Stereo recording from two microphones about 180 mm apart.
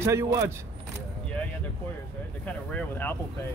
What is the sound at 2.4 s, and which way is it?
Speech, 10° left (ahead or behind).